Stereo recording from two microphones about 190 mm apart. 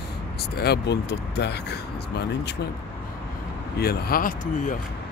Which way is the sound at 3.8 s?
55° left (ahead or behind).